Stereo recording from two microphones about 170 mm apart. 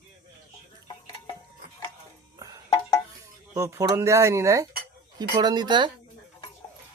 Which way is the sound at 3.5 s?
20° right (ahead or behind).